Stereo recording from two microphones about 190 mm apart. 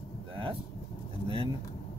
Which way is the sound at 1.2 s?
25° right (ahead or behind).